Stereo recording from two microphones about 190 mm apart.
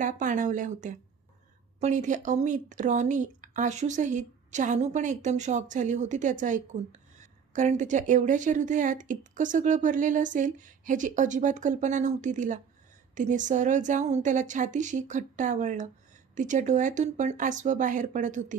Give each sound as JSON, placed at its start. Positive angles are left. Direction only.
{"t": 0.0, "sound": "speech", "side_deg": -45}